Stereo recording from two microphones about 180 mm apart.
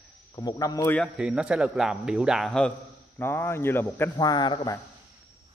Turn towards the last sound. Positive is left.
turn(degrees=25)  # may be behind; listen again after turning